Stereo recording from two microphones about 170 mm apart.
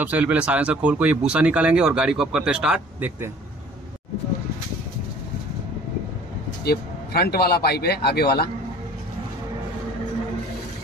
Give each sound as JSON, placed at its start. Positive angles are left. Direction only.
{"t": 0.0, "sound": "speech", "side_deg": -10}
{"t": 6.6, "sound": "speech", "side_deg": 70}